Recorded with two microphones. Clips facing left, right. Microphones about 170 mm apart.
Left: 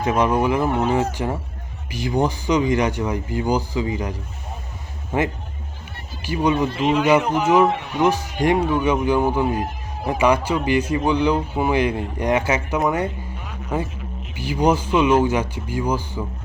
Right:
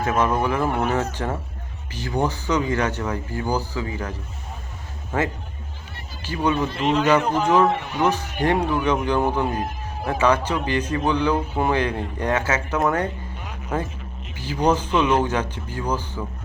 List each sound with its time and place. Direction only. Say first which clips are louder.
0.0 s a man's voice: left 2 dB; 15° left (ahead or behind)
5.1 s a man's voice: left 2 dB; 15° left (ahead or behind)
14.3 s a man's voice: left 2 dB; 10° left (ahead or behind)